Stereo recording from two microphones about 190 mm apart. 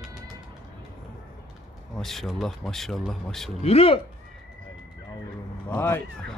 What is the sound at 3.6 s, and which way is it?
Speech, 30° left (ahead or behind).